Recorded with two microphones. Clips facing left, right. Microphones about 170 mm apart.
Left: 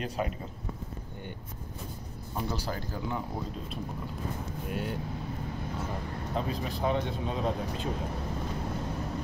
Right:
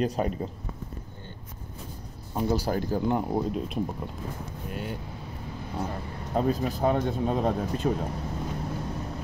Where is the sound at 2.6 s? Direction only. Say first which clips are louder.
Right 9 dB; 45° right (ahead or behind).